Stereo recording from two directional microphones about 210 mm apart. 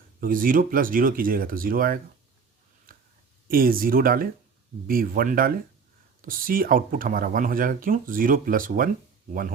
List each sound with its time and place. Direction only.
0.2 s speech: 40° right (ahead or behind)
2.9 s a sound: 45° right (ahead or behind)
3.5 s speech: 45° right (ahead or behind)